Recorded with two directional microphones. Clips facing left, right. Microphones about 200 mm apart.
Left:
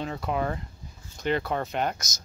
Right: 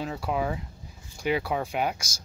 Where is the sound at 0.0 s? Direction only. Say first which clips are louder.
Even; 5° right (ahead or behind).